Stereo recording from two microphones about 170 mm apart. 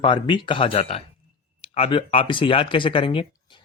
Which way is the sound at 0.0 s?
30° left (ahead or behind).